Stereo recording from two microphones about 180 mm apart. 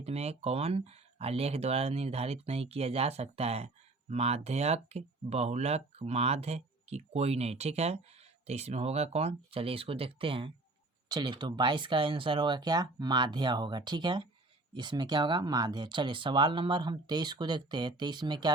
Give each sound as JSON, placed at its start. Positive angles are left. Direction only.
{"t": 0.0, "sound": "speech", "side_deg": -35}